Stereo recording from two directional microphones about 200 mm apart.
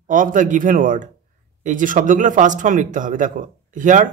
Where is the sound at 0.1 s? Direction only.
40° right (ahead or behind).